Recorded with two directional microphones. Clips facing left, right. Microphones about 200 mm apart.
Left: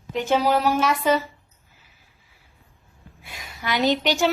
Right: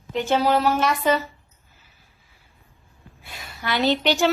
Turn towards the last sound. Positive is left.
turn(degrees=10)  # may be behind; listen again after turning